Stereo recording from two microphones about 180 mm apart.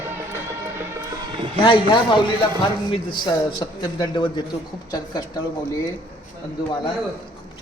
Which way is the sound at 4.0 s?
25° left (ahead or behind).